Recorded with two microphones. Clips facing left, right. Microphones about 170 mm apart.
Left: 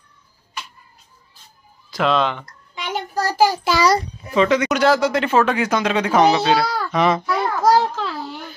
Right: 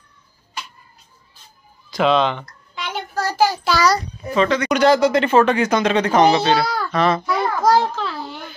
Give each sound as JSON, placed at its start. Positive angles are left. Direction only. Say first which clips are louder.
{"t": 1.9, "sound": "speech", "louder": "right 2 dB", "side_deg": 0}
{"t": 2.4, "sound": "a sound", "louder": "right 1 dB", "side_deg": 15}
{"t": 2.9, "sound": "child singing", "louder": "left 2 dB", "side_deg": 40}
{"t": 3.3, "sound": "a child's voice", "louder": "left 1 dB", "side_deg": 15}
{"t": 4.6, "sound": "a child's voice", "louder": "right 2 dB", "side_deg": 0}
{"t": 7.6, "sound": "a sound", "louder": "left 1 dB", "side_deg": 10}